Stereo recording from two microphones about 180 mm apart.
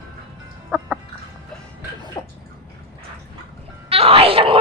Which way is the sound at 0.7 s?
5° right (ahead or behind).